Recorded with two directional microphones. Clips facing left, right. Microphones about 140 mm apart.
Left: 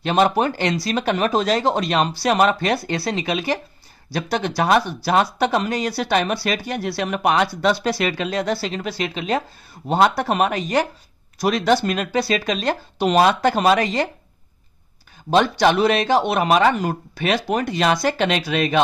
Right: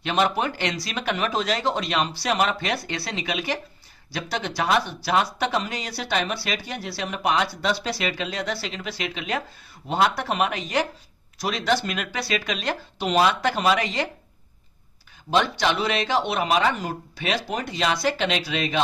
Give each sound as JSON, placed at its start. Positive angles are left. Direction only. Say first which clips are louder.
{"t": 0.0, "sound": "speech", "louder": "left 5 dB", "side_deg": 40}
{"t": 15.6, "sound": "speech", "louder": "left 7 dB", "side_deg": 45}